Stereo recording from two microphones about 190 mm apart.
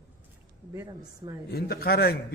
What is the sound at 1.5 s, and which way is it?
Speech, 55° left (ahead or behind).